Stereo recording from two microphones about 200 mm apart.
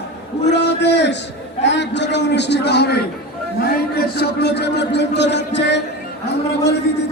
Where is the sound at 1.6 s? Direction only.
60° left (ahead or behind).